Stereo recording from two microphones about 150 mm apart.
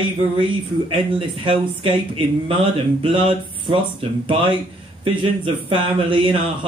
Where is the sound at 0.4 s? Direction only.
35° right (ahead or behind).